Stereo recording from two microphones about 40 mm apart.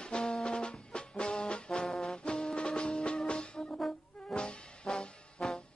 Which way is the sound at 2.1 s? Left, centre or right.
Centre.